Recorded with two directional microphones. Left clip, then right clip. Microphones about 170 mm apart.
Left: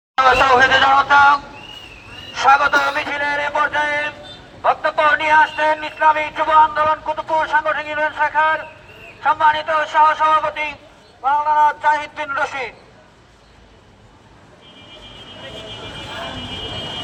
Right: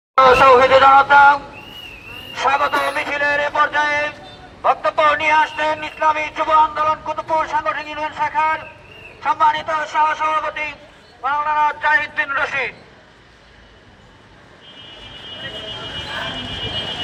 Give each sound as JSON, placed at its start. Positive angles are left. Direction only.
{"t": 0.2, "sound": "speech", "side_deg": 5}
{"t": 3.8, "sound": "music", "side_deg": 5}
{"t": 4.6, "sound": "speech", "side_deg": -5}
{"t": 10.0, "sound": "a man's voice", "side_deg": 15}